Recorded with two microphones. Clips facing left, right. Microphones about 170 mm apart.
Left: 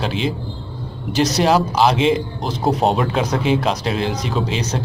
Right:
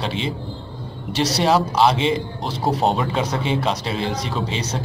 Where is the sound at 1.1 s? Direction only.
30° right (ahead or behind).